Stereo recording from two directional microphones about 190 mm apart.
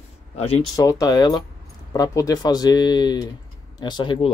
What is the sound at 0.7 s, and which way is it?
Speech, 20° left (ahead or behind).